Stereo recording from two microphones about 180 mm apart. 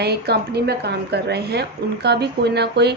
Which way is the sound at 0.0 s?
65° right (ahead or behind).